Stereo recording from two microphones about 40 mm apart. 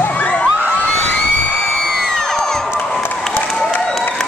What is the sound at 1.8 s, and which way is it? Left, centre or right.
Music, centre.